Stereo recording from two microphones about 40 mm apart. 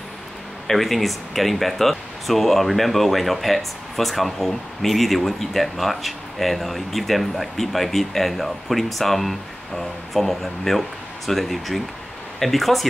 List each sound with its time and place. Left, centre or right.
0.7 s speech: centre